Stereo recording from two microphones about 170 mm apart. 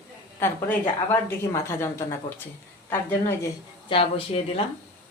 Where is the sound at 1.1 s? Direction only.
15° left (ahead or behind).